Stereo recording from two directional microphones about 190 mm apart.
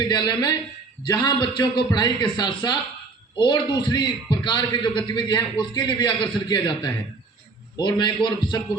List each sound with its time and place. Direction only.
0.1 s a man's voice: 20° left (ahead or behind)